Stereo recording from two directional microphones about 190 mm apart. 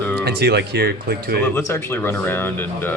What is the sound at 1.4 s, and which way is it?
Speech, 10° left (ahead or behind).